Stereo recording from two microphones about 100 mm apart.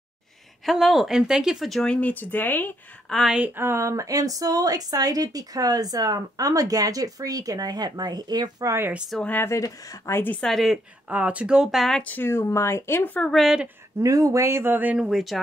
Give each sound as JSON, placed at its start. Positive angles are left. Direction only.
{"t": 0.7, "sound": "speech", "side_deg": 0}
{"t": 3.1, "sound": "speech", "side_deg": 0}
{"t": 3.3, "sound": "speech", "side_deg": -15}
{"t": 3.6, "sound": "a woman's voice", "side_deg": -30}
{"t": 9.2, "sound": "speech", "side_deg": 20}
{"t": 10.3, "sound": "speech", "side_deg": 5}
{"t": 11.1, "sound": "speech", "side_deg": -15}
{"t": 12.0, "sound": "speech", "side_deg": 20}
{"t": 13.3, "sound": "speech", "side_deg": 0}
{"t": 13.9, "sound": "speech", "side_deg": -35}
{"t": 15.0, "sound": "speech", "side_deg": 0}